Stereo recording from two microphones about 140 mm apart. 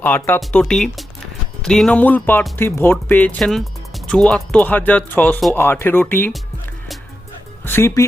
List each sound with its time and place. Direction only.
0.0 s speech: 10° left (ahead or behind)
7.6 s speech: 15° left (ahead or behind)